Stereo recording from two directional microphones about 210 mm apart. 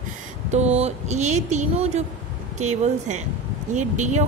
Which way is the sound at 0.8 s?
35° right (ahead or behind).